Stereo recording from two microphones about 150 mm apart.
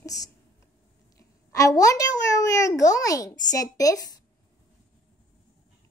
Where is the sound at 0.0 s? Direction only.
25° left (ahead or behind).